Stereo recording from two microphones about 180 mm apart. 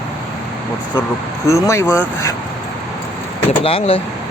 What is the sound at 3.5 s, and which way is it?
Speech, 35° left (ahead or behind).